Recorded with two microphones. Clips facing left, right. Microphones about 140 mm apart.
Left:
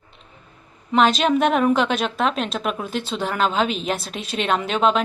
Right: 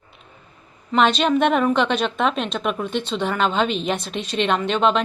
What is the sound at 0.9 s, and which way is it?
A woman's voice, centre (ahead or behind).